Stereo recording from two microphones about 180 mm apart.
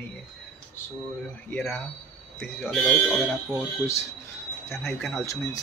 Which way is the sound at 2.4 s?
5° left (ahead or behind).